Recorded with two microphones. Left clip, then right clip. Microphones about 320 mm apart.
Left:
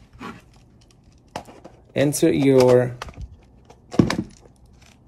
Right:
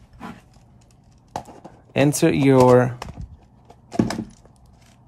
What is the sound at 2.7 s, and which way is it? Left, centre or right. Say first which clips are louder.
Speech: right 1 dB; right.